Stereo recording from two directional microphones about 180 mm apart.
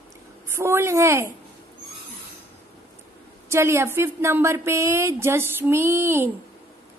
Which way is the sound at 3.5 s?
15° right (ahead or behind).